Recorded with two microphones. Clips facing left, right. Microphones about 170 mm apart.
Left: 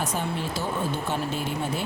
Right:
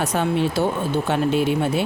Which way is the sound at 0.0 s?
70° right (ahead or behind).